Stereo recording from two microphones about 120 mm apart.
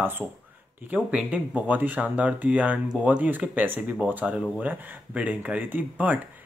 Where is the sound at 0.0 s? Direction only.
20° right (ahead or behind).